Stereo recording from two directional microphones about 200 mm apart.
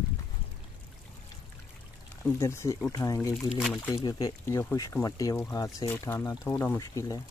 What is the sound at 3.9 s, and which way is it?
Speech, 20° left (ahead or behind).